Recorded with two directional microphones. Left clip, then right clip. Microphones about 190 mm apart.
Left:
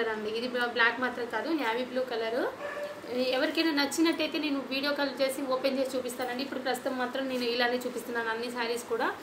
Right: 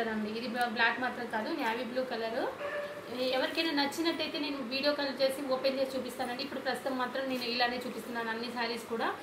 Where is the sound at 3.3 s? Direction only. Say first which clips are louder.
Left 2 dB; 50° left (ahead or behind).